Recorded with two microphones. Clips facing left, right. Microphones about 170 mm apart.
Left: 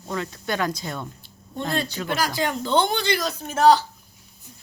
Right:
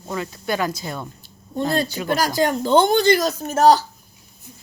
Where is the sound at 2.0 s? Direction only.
40° right (ahead or behind).